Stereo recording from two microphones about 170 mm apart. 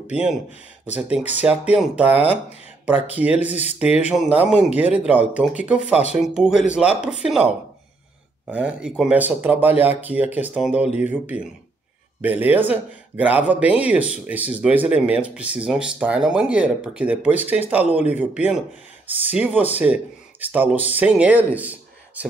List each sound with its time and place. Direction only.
0.1 s speech: 5° right (ahead or behind)
3.3 s speech: 40° left (ahead or behind)
3.8 s speech: 10° right (ahead or behind)